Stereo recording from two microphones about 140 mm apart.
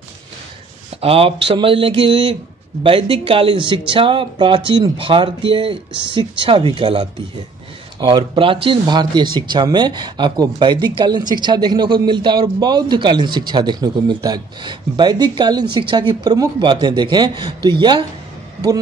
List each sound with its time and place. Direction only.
1.0 s speech: 40° right (ahead or behind)